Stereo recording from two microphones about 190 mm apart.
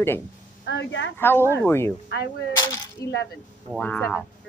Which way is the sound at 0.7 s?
70° left (ahead or behind).